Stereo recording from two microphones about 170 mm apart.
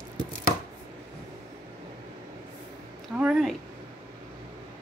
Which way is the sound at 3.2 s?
5° right (ahead or behind).